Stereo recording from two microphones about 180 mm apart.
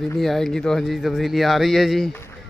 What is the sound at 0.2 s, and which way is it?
Speech, centre (ahead or behind).